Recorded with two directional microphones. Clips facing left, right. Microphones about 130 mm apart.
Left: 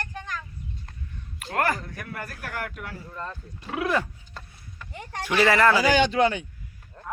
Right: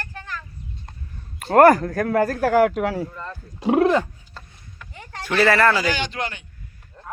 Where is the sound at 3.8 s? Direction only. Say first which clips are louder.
Right 5 dB; 20° right (ahead or behind).